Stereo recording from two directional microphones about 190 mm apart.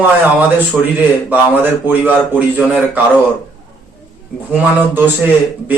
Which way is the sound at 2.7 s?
10° right (ahead or behind).